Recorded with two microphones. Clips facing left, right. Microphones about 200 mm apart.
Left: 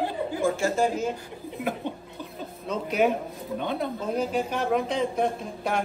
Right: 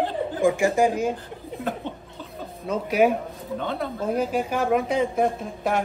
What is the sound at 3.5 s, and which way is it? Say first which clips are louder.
Speech: even; 15° left (ahead or behind).